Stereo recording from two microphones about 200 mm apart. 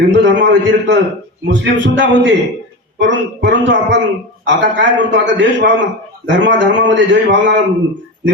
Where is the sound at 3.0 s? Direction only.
65° right (ahead or behind).